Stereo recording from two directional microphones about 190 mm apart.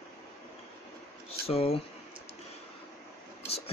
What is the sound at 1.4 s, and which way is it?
Speech, 30° left (ahead or behind).